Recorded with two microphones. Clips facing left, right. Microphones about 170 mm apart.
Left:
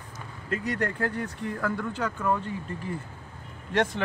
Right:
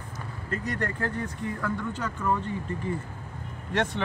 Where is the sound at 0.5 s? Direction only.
70° left (ahead or behind).